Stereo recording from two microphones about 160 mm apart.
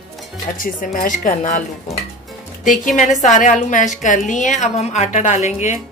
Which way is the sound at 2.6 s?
55° left (ahead or behind).